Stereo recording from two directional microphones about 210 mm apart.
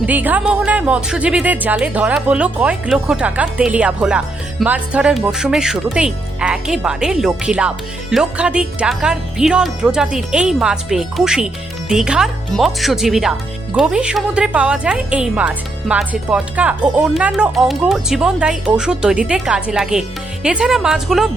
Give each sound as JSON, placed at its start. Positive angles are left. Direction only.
{"t": 0.0, "sound": "speech", "side_deg": -10}